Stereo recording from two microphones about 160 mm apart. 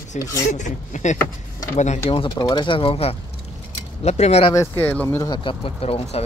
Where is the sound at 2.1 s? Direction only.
30° left (ahead or behind).